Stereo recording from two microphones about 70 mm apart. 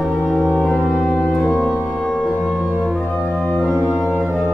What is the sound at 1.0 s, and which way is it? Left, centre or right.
Music, centre.